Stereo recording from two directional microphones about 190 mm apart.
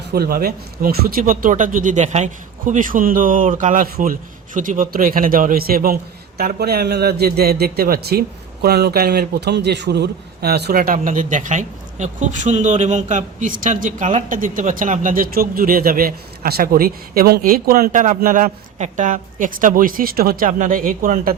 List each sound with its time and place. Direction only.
0.1 s a man's voice: 55° right (ahead or behind)